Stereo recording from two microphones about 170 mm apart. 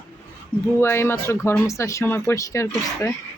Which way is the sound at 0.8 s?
15° left (ahead or behind).